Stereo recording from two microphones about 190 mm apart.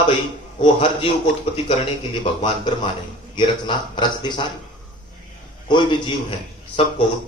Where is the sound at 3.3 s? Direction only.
25° left (ahead or behind).